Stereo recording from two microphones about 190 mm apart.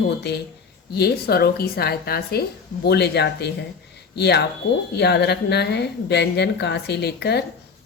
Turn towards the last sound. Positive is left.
turn(degrees=60)  # may be behind; listen again after turning